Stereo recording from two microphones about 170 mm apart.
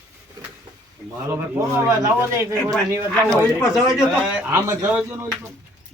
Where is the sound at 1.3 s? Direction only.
15° right (ahead or behind).